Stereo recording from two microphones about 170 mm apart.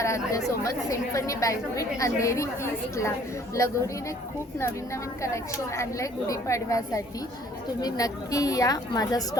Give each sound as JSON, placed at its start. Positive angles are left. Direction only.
{"t": 0.0, "sound": "a woman's voice", "side_deg": 20}
{"t": 5.2, "sound": "a woman's voice", "side_deg": 15}